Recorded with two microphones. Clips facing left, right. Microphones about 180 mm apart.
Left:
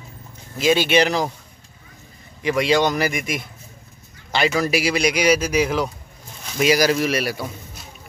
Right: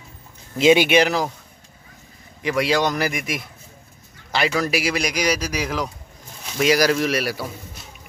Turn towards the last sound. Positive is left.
turn(degrees=0)  # may be behind; listen again after turning